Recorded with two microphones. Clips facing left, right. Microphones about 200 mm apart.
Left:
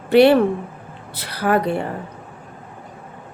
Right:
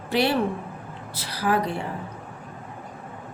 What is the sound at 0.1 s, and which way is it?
Speech, 60° left (ahead or behind).